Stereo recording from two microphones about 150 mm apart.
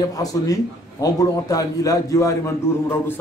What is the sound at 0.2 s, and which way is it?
A man's voice, 25° left (ahead or behind).